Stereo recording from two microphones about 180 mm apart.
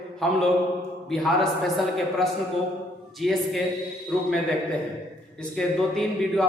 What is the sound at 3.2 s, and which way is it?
Speech, centre (ahead or behind).